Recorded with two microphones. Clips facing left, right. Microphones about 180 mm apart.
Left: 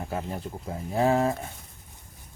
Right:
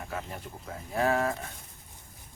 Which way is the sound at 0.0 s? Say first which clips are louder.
Left 5 dB; 30° left (ahead or behind).